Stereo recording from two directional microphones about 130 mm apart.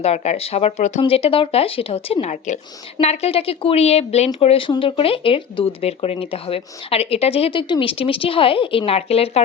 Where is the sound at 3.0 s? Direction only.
55° left (ahead or behind).